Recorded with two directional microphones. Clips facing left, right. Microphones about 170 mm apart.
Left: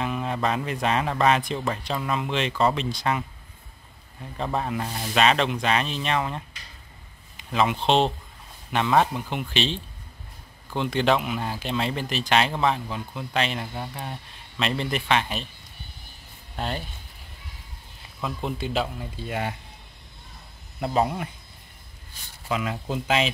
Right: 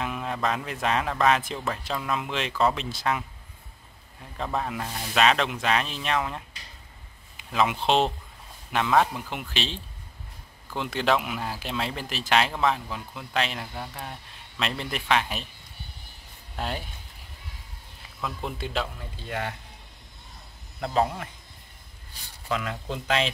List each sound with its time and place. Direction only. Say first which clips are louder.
0.0 s speech: left 2 dB; centre (ahead or behind)
4.6 s speech: left 2 dB; centre (ahead or behind)
16.5 s speech: left 2 dB; 5° right (ahead or behind)
18.2 s speech: left 3 dB; centre (ahead or behind)
20.8 s speech: left 1 dB; 20° left (ahead or behind)
22.5 s speech: left 2 dB; 10° left (ahead or behind)